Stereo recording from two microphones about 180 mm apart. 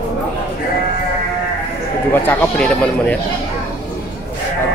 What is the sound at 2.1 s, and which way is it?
Speech, 10° left (ahead or behind).